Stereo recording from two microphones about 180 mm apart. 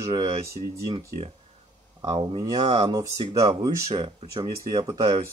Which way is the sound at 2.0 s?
30° right (ahead or behind).